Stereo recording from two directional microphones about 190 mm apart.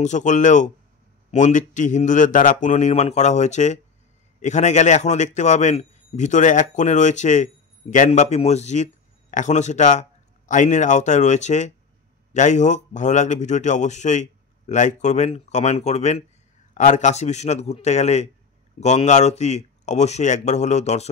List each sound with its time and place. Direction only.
0.0 s a man's voice: 40° left (ahead or behind)